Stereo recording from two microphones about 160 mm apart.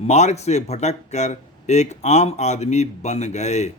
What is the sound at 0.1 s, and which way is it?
A man's voice, 45° left (ahead or behind).